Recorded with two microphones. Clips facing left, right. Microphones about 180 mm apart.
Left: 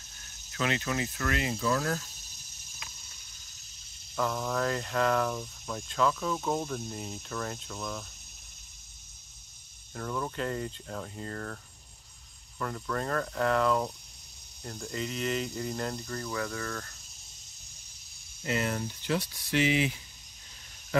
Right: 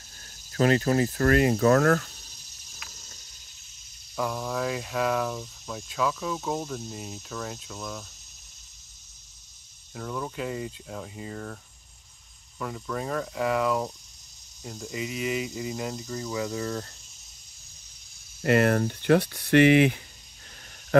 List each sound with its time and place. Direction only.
0.2 s speech: 35° right (ahead or behind); by 2.1 s 70° right (ahead or behind)
4.1 s speech: 5° right (ahead or behind)
9.9 s speech: 5° right (ahead or behind); by 16.9 s 20° right (ahead or behind)
18.4 s speech: 65° right (ahead or behind)